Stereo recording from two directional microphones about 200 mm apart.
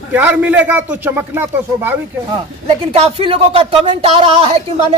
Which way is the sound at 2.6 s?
30° right (ahead or behind).